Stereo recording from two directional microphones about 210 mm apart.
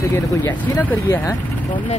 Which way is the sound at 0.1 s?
10° left (ahead or behind).